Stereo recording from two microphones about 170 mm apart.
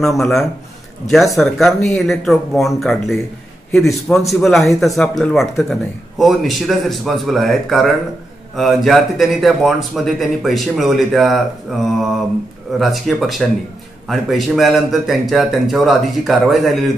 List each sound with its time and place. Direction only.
0.0 s speech: centre (ahead or behind)